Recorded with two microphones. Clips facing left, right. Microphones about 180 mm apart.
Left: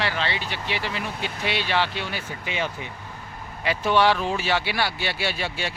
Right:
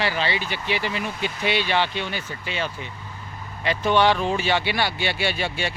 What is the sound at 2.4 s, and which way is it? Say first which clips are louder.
Speech: left 1 dB; 15° left (ahead or behind).